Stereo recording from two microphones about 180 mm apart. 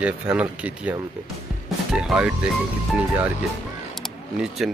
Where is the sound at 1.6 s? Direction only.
5° right (ahead or behind).